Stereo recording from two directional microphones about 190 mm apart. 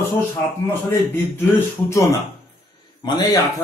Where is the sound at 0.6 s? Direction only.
10° left (ahead or behind).